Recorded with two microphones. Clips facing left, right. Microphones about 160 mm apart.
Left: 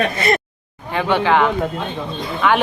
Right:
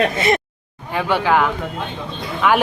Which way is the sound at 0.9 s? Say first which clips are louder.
Left 1 dB; 10° right (ahead or behind).